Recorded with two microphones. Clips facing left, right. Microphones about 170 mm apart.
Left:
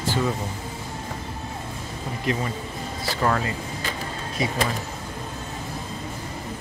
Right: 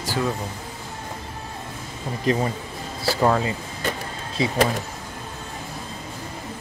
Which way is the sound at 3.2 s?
20° right (ahead or behind).